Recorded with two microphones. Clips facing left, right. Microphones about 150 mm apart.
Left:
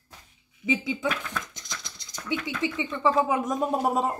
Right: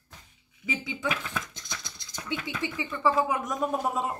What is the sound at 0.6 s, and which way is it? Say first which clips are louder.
Speech: left 5 dB; 20° left (ahead or behind).